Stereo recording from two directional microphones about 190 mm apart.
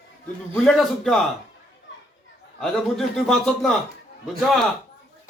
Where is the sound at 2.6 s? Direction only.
Centre (ahead or behind).